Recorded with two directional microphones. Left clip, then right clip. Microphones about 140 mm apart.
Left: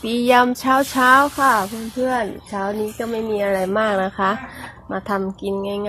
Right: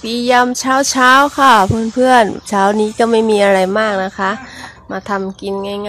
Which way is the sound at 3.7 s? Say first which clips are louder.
Right 4 dB; 15° right (ahead or behind).